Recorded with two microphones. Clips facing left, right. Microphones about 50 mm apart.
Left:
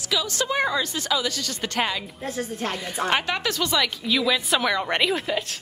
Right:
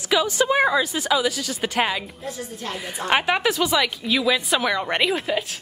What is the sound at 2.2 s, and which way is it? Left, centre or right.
Speech, left.